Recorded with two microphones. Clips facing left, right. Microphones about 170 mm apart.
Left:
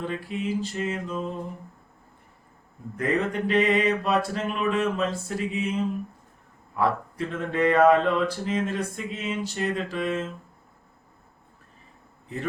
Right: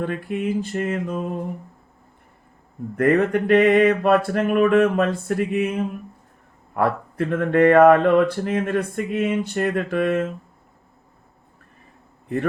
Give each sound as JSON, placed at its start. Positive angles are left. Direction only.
{"t": 0.0, "sound": "mantra", "side_deg": -55}
{"t": 2.9, "sound": "mantra", "side_deg": -60}